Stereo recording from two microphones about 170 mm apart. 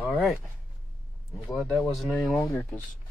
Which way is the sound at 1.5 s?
Centre (ahead or behind).